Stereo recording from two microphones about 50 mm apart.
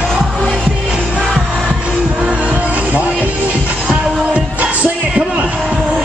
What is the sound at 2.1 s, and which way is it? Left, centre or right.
Music, right.